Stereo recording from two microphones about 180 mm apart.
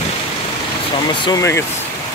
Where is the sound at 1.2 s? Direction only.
20° left (ahead or behind).